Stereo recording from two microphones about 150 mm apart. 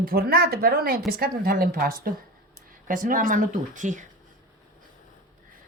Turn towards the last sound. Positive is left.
turn(degrees=-55)  # may be behind; listen again after turning